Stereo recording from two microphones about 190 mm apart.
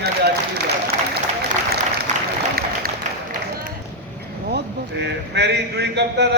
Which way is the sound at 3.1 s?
40° right (ahead or behind).